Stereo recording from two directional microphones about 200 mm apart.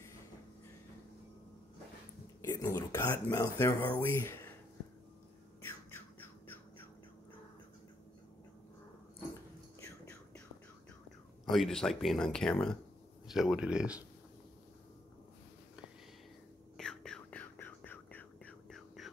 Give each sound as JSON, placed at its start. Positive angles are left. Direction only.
{"t": 2.4, "sound": "speech", "side_deg": 15}
{"t": 5.6, "sound": "squawk", "side_deg": 10}
{"t": 11.4, "sound": "speech", "side_deg": 0}
{"t": 16.7, "sound": "whispering", "side_deg": 5}